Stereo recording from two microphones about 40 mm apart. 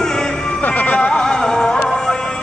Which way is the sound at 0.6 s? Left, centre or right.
Left.